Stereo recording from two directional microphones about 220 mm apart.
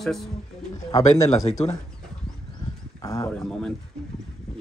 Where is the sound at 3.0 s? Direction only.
15° left (ahead or behind).